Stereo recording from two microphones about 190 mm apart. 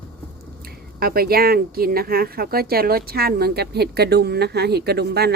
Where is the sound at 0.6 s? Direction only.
50° right (ahead or behind).